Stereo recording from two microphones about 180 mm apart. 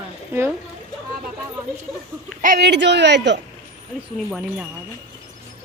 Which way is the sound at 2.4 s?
55° right (ahead or behind).